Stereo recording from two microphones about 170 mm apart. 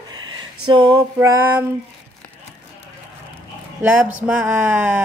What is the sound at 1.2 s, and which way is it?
Speech, 15° right (ahead or behind).